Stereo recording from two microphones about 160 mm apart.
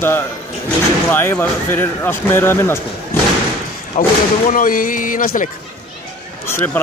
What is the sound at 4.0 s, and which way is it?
Speech, 45° left (ahead or behind).